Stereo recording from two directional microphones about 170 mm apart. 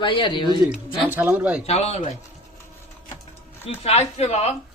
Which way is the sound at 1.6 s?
40° left (ahead or behind).